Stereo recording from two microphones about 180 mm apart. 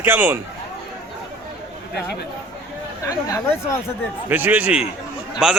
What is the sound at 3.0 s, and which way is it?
Speech, 15° left (ahead or behind).